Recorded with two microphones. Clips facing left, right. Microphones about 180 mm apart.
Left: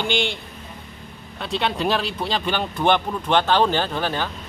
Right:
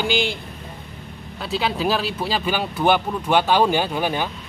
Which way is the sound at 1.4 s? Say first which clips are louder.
Even; 5° right (ahead or behind).